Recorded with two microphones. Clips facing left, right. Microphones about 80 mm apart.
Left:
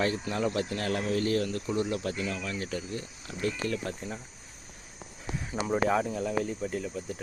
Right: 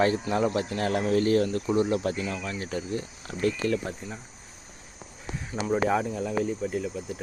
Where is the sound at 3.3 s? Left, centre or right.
Right.